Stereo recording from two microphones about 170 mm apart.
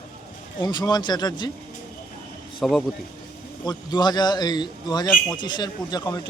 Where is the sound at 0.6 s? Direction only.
25° left (ahead or behind).